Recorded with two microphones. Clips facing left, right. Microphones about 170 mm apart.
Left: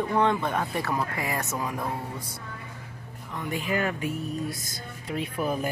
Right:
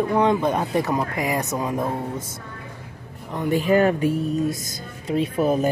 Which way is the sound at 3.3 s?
35° right (ahead or behind).